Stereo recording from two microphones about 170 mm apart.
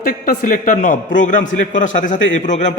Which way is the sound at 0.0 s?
55° left (ahead or behind).